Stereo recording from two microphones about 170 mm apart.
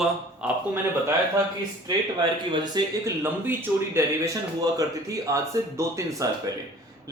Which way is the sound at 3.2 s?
10° right (ahead or behind).